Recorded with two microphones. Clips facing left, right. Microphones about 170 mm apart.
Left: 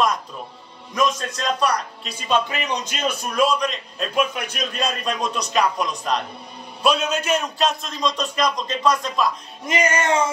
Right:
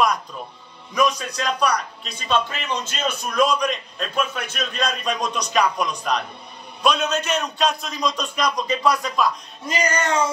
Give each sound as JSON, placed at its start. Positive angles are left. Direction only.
{"t": 0.9, "sound": "a man's voice", "side_deg": 0}
{"t": 9.7, "sound": "music", "side_deg": 25}